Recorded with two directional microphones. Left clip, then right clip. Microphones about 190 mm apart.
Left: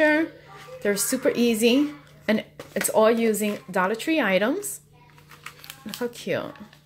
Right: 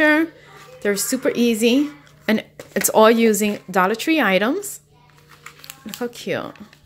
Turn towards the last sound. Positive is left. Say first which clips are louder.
# right 2 dB
turn(degrees=-15)  # may be behind; listen again after turning